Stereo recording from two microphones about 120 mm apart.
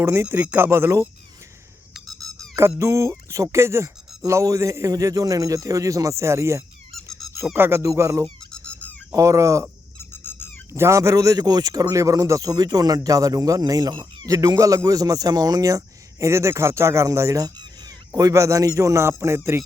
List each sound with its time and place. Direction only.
0.0 s a man's voice: 20° right (ahead or behind)
2.0 s a sound: centre (ahead or behind)
2.6 s a man's voice: 25° right (ahead or behind)
6.9 s squeak: centre (ahead or behind)
7.5 s a man's voice: 20° right (ahead or behind)
8.5 s squeak: 10° left (ahead or behind)
9.1 s a man's voice: 25° right (ahead or behind)
10.0 s squeak: 20° left (ahead or behind)
10.8 s a man's voice: 25° right (ahead or behind)